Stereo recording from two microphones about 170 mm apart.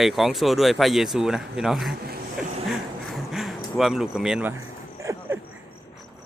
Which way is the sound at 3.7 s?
Centre (ahead or behind).